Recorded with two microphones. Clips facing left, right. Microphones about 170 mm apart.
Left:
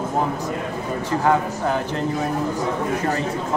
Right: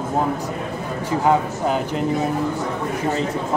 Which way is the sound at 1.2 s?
15° right (ahead or behind).